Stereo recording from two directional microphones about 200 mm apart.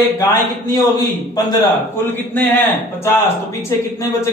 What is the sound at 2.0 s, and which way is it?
Speech, 10° left (ahead or behind).